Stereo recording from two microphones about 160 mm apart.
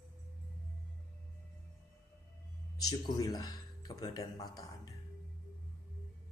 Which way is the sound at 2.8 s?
25° left (ahead or behind).